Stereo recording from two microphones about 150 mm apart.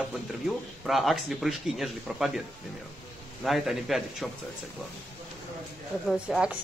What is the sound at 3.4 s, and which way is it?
Speech, centre (ahead or behind).